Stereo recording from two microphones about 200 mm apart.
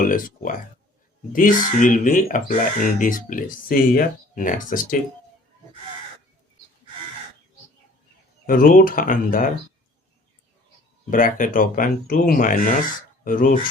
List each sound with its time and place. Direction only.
0.0 s speech: 45° left (ahead or behind)
8.4 s speech: 45° left (ahead or behind)
11.1 s speech: 40° left (ahead or behind)